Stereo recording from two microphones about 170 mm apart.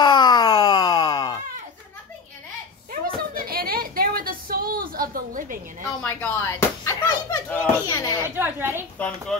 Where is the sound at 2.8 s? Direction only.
55° right (ahead or behind).